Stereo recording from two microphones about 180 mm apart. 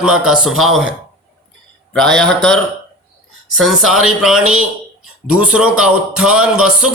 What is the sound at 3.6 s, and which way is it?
Speech, centre (ahead or behind).